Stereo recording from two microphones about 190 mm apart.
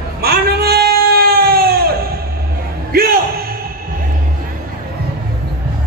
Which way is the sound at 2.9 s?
50° right (ahead or behind).